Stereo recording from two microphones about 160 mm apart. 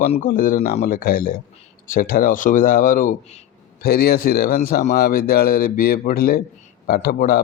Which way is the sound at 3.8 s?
75° left (ahead or behind).